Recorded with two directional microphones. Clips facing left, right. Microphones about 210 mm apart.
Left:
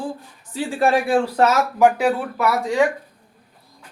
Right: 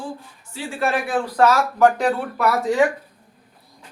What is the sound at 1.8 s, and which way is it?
Speech, 10° left (ahead or behind).